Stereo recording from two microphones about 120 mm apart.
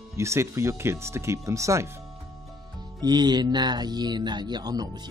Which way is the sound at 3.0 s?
35° right (ahead or behind).